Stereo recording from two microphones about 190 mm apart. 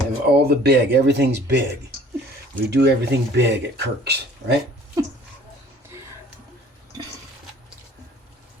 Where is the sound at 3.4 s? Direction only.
65° right (ahead or behind).